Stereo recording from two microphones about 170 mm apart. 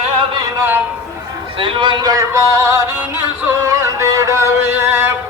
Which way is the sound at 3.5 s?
15° right (ahead or behind).